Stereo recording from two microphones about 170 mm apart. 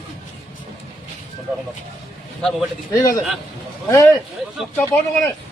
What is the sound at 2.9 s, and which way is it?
Speech, 20° left (ahead or behind).